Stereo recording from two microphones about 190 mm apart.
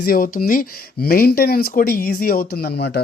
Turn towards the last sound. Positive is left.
turn(degrees=60)  # may be behind; listen again after turning